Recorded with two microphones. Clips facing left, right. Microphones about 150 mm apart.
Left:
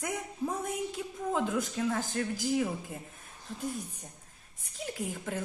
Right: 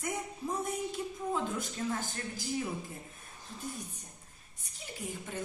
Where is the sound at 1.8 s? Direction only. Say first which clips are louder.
Left 3 dB; 80° left.